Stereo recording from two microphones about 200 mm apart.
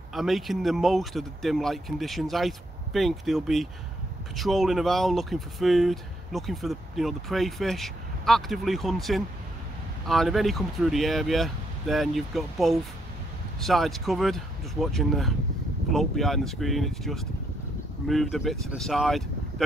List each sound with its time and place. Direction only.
0.1 s speech: centre (ahead or behind)